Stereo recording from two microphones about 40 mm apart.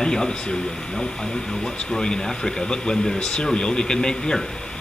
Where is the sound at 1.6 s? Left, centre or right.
Centre.